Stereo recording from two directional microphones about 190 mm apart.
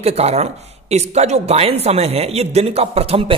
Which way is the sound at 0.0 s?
35° right (ahead or behind).